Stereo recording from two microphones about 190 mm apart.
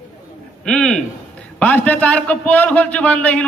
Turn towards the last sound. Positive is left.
turn(degrees=5)  # may be behind; listen again after turning